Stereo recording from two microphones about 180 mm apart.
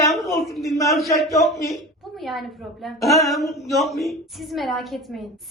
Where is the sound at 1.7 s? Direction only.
Centre (ahead or behind).